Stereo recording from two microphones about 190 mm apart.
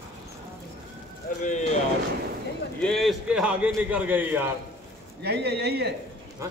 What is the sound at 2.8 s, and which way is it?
A man's voice, centre (ahead or behind).